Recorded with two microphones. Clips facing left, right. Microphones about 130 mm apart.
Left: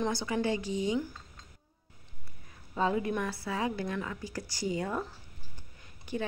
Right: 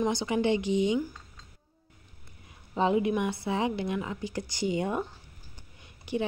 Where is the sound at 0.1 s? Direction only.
20° right (ahead or behind).